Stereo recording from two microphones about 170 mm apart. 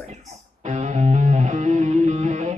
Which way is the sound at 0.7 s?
45° right (ahead or behind).